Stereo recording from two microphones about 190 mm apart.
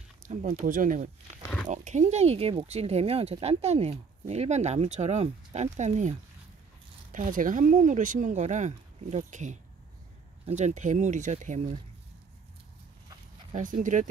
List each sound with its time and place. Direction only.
0.2 s speech: 40° right (ahead or behind)
13.5 s speech: 45° right (ahead or behind)